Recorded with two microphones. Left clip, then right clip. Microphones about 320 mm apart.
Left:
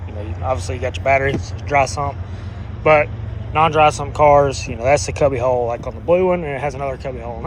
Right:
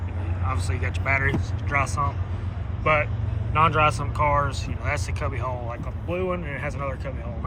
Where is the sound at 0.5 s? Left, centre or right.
Centre.